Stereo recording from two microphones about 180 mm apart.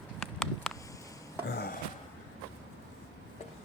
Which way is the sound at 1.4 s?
65° left (ahead or behind).